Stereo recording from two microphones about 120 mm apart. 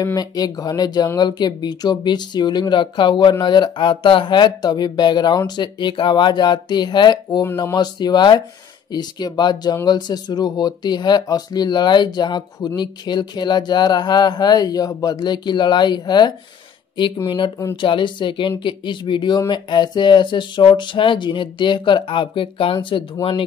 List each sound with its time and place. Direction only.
0.0 s speech: 30° left (ahead or behind)
17.7 s speech: 45° left (ahead or behind)